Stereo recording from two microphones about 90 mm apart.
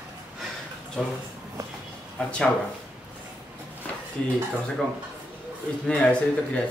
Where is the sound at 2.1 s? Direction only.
10° left (ahead or behind).